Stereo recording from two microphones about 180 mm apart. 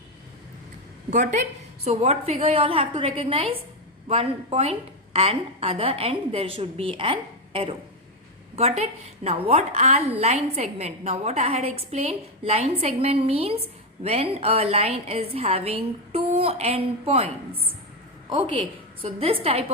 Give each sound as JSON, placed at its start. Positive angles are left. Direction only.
{"t": 1.1, "sound": "a woman's voice", "side_deg": -40}